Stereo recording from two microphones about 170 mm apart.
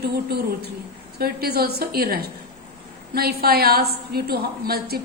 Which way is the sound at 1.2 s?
65° right (ahead or behind).